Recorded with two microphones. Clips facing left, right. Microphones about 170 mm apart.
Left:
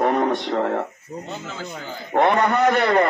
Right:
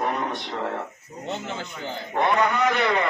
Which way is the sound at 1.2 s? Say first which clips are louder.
Right 3 dB; 25° right (ahead or behind).